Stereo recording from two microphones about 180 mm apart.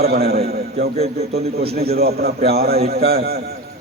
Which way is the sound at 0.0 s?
60° right (ahead or behind).